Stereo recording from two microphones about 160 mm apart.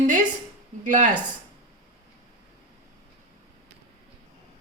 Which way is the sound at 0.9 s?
55° right (ahead or behind).